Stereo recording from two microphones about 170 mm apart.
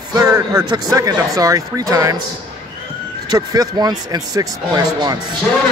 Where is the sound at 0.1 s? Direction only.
20° right (ahead or behind).